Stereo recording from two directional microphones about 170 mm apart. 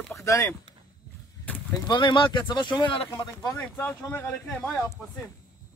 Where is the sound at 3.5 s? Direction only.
10° left (ahead or behind).